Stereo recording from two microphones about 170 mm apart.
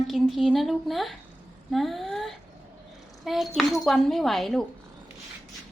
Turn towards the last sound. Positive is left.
turn(degrees=0)  # may be behind; listen again after turning